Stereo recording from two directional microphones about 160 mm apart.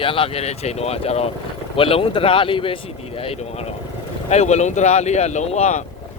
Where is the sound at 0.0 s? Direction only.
35° left (ahead or behind).